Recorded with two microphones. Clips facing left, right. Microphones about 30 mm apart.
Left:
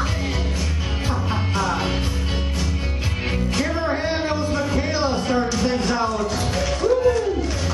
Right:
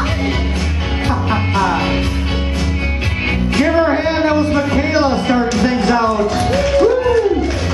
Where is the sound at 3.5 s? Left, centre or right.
Right.